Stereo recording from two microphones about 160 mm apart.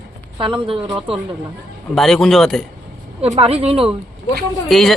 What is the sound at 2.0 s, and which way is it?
Speech, 5° left (ahead or behind).